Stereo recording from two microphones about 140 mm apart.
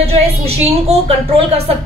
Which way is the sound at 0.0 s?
45° right (ahead or behind).